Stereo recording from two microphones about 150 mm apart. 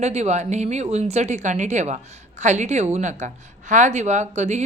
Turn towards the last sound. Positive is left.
turn(degrees=-50)  # may be behind; listen again after turning